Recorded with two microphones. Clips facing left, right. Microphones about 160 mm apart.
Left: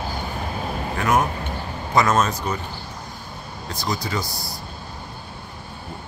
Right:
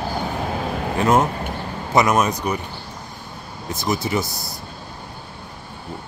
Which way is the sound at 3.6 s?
20° right (ahead or behind).